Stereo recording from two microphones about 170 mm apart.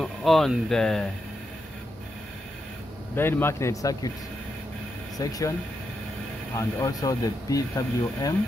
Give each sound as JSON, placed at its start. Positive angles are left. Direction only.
{"t": 0.0, "sound": "speech", "side_deg": 0}
{"t": 3.2, "sound": "speech", "side_deg": 15}
{"t": 5.1, "sound": "speech", "side_deg": 20}
{"t": 6.5, "sound": "speech", "side_deg": 20}